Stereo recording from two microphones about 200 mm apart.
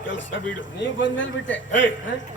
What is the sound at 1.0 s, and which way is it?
Speech, 70° left (ahead or behind).